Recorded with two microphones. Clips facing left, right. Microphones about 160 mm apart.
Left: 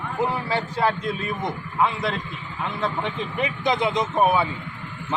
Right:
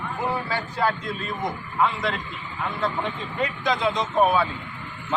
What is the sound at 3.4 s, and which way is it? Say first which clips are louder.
A man's voice: left 1 dB; 20° left (ahead or behind).